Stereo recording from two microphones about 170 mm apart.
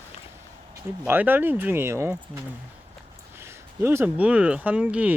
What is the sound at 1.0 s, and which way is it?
Speech, 10° right (ahead or behind).